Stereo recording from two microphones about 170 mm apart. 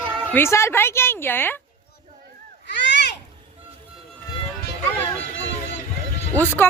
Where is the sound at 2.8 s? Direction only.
90° left.